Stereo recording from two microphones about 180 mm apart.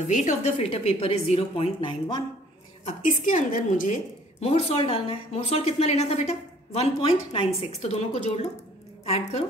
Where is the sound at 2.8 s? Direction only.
40° left (ahead or behind).